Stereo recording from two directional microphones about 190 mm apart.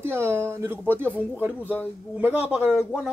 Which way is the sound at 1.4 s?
10° right (ahead or behind).